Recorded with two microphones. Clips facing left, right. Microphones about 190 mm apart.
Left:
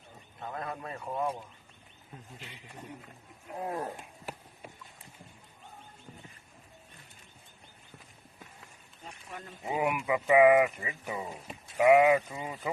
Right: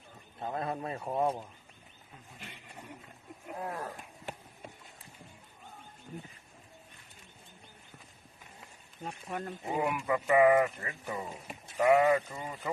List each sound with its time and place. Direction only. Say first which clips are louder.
0.3 s a man's voice: right 3 dB; 30° right (ahead or behind)
2.4 s a man's voice: even; 55° right (ahead or behind)
3.7 s speech: left 6 dB; 25° left (ahead or behind)
9.3 s a man's voice: right 8 dB; 50° right (ahead or behind)
9.7 s speech: left 2 dB; 5° left (ahead or behind)